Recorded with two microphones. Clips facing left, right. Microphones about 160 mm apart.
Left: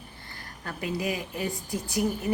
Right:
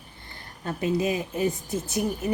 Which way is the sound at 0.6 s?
25° right (ahead or behind).